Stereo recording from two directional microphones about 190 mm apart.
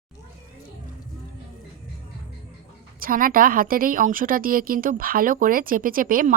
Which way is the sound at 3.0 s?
50° right (ahead or behind).